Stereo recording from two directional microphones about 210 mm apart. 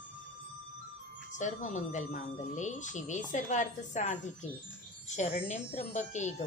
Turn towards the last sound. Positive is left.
turn(degrees=35)  # may be behind; listen again after turning